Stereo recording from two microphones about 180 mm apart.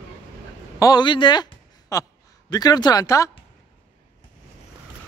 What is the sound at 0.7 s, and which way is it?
Speech, 20° left (ahead or behind).